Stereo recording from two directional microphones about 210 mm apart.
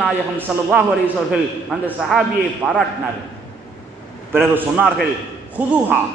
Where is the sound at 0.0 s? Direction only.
5° right (ahead or behind).